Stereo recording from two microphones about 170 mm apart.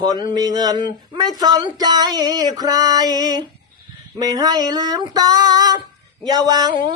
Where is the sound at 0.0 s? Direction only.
25° right (ahead or behind).